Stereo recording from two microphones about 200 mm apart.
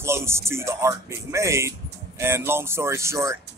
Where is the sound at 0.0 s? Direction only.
15° right (ahead or behind).